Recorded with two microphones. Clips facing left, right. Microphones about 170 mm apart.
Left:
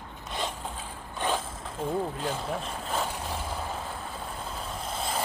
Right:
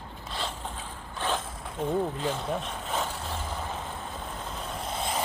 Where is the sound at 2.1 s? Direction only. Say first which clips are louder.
Right 1 dB; 5° left (ahead or behind).